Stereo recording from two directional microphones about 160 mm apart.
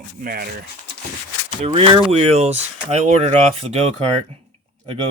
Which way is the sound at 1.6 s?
35° right (ahead or behind).